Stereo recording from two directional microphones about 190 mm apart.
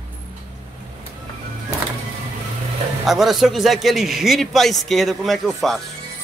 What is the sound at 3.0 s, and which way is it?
A man's voice, centre (ahead or behind).